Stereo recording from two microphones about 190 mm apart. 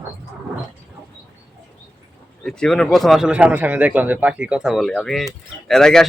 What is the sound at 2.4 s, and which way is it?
A man's voice, 5° left (ahead or behind).